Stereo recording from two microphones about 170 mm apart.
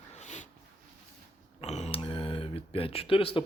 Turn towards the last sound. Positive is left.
turn(degrees=30)  # may be behind; listen again after turning